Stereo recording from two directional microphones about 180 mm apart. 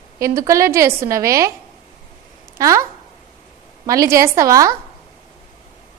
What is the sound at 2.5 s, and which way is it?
A woman's voice, 15° right (ahead or behind).